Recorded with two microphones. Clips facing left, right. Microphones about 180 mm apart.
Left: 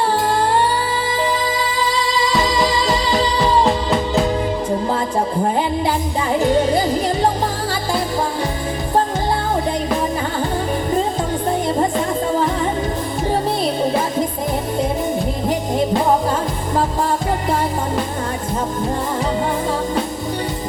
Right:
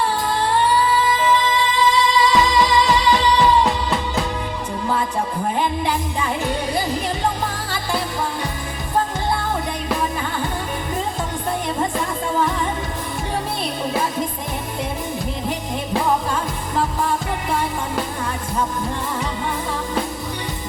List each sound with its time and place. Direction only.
1.2 s music: 40° left (ahead or behind)